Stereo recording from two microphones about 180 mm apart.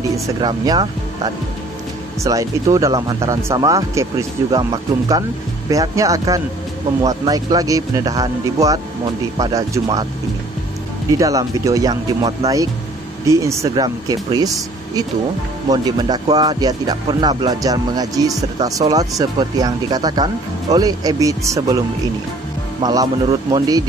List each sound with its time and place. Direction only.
0.4 s speech: 25° right (ahead or behind)
11.1 s speech: 20° right (ahead or behind)
15.7 s speech: 20° right (ahead or behind)
22.8 s speech: 25° right (ahead or behind)